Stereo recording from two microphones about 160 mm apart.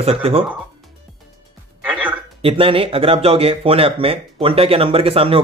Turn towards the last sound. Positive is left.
turn(degrees=-35)  # may be behind; listen again after turning